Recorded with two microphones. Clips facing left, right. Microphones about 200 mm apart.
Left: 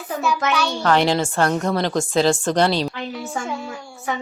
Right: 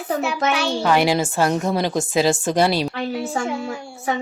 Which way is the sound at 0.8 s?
10° right (ahead or behind).